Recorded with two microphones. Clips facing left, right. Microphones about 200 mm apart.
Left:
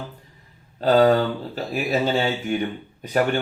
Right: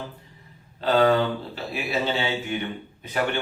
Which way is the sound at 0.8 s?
40° left (ahead or behind).